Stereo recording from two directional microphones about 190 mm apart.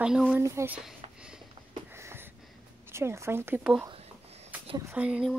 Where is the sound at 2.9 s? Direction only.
15° right (ahead or behind).